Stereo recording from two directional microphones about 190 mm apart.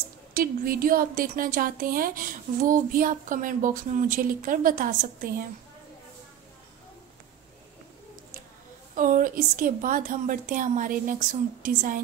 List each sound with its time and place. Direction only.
0.3 s a woman's voice: 50° right (ahead or behind)
8.9 s a woman's voice: 45° right (ahead or behind)